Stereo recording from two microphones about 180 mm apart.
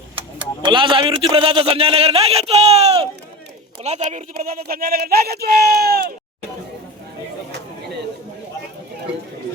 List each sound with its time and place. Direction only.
0.2 s a man's voice: 25° right (ahead or behind)
4.4 s speech: 55° right (ahead or behind)